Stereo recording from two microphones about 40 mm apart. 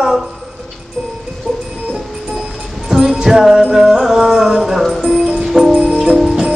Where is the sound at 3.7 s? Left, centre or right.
Centre.